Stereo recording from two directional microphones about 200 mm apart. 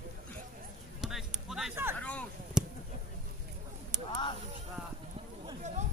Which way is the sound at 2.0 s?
5° left (ahead or behind).